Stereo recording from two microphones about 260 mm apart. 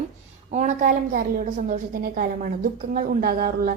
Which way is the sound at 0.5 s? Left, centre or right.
Right.